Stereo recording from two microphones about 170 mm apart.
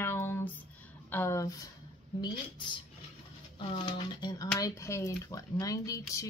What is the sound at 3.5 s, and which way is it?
Speech, 30° left (ahead or behind).